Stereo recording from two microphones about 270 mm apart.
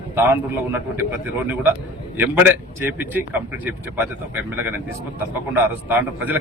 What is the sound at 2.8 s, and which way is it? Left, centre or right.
A man's voice, centre.